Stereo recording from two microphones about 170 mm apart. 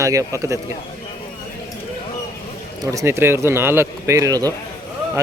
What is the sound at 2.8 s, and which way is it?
A man's voice, 20° right (ahead or behind).